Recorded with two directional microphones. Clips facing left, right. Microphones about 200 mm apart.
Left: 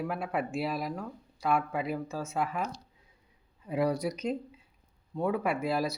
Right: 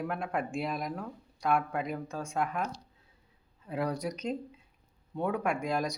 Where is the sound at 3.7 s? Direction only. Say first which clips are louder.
Left 4 dB; 10° left (ahead or behind).